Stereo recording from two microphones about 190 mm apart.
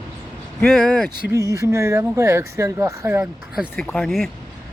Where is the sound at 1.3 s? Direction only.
15° right (ahead or behind); by 4.3 s centre (ahead or behind).